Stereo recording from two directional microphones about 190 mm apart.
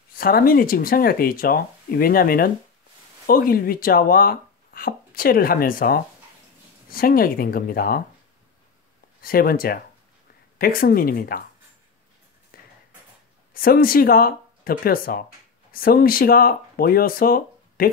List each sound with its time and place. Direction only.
0.2 s speech: 50° left (ahead or behind)
9.2 s speech: 50° left (ahead or behind)
12.5 s a sound: 50° left (ahead or behind)
13.5 s speech: 50° left (ahead or behind)